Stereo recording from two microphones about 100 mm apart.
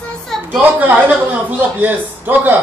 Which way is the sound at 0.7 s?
15° right (ahead or behind).